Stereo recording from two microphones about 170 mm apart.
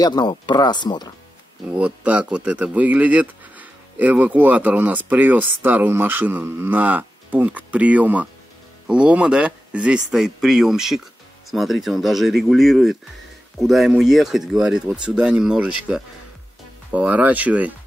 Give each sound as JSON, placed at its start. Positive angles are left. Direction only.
{"t": 0.0, "sound": "speech", "side_deg": 25}
{"t": 1.8, "sound": "speech", "side_deg": -5}
{"t": 16.9, "sound": "speech", "side_deg": -10}